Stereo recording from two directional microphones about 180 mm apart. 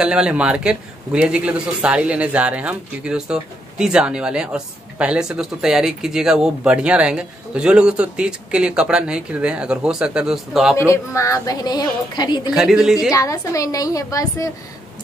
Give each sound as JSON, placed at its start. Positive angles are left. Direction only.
{"t": 0.0, "sound": "a man's voice", "side_deg": -5}
{"t": 10.8, "sound": "a woman's voice", "side_deg": 15}
{"t": 12.5, "sound": "a man's voice", "side_deg": -5}
{"t": 13.1, "sound": "a woman's voice", "side_deg": 20}